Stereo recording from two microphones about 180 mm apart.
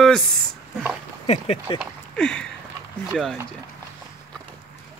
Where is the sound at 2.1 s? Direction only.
5° left (ahead or behind).